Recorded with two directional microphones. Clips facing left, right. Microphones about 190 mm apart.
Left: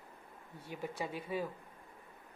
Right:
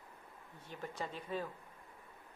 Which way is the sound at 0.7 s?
10° left (ahead or behind).